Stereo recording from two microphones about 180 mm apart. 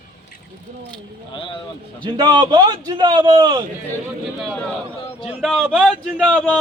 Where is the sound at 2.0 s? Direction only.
25° right (ahead or behind).